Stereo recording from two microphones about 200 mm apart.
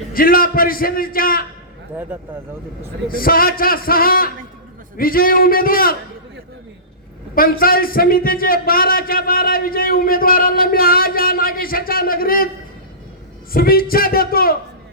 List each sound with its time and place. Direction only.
0.1 s a man's voice: 45° left (ahead or behind)
3.1 s a man's voice: 45° left (ahead or behind)
7.3 s a man's voice: 45° left (ahead or behind)
13.5 s a man's voice: 45° left (ahead or behind)